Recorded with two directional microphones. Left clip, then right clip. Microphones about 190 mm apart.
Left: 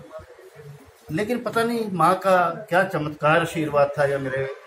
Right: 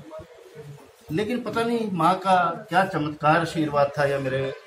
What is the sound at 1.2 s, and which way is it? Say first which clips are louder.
Speech: left 3 dB; 25° left (ahead or behind).